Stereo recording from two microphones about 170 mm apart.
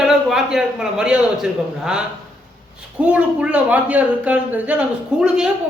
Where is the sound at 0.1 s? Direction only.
Centre (ahead or behind).